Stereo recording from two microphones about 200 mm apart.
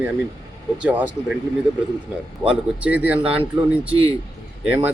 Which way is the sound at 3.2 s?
25° right (ahead or behind).